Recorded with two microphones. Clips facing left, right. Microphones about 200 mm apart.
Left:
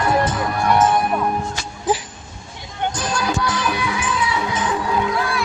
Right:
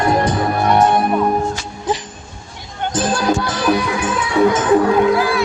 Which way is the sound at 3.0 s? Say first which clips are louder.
Right 8 dB; 30° right (ahead or behind).